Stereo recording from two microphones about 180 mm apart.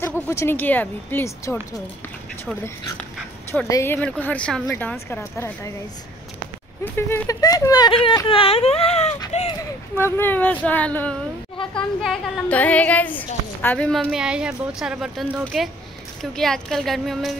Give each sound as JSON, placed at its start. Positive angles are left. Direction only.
{"t": 0.0, "sound": "speech", "side_deg": 15}
{"t": 3.6, "sound": "speech", "side_deg": 15}
{"t": 6.8, "sound": "speech", "side_deg": 10}
{"t": 9.9, "sound": "a woman's voice", "side_deg": 10}